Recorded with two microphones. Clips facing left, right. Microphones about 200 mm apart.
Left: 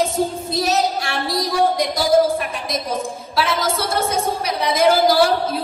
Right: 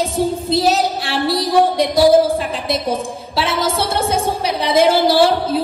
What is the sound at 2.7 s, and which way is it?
A woman's voice, 30° right (ahead or behind).